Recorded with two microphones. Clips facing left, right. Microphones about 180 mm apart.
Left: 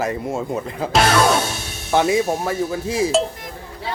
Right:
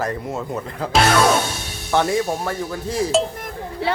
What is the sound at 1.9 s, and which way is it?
Speech, 10° left (ahead or behind).